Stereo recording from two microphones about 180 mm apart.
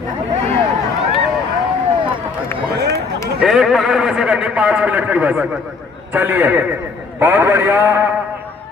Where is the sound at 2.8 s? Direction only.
65° right (ahead or behind).